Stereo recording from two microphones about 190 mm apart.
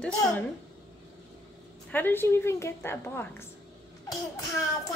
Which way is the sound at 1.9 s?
10° left (ahead or behind).